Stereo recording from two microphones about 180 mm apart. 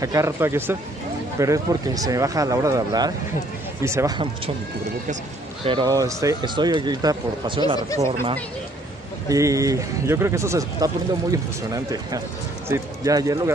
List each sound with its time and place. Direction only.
0.0 s speech: 15° right (ahead or behind)
5.6 s speech: 25° right (ahead or behind)
9.3 s speech: 20° right (ahead or behind)